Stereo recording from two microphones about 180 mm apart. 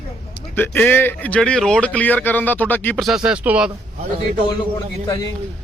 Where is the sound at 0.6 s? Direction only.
10° left (ahead or behind).